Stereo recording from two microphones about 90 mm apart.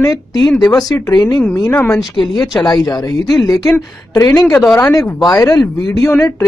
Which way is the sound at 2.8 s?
45° left (ahead or behind).